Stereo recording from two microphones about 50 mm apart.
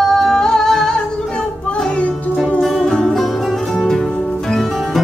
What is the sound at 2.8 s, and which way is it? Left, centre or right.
Music, centre.